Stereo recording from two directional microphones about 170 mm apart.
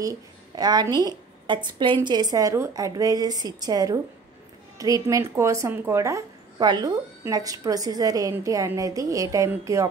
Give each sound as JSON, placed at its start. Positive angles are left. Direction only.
{"t": 0.0, "sound": "a woman's voice", "side_deg": -20}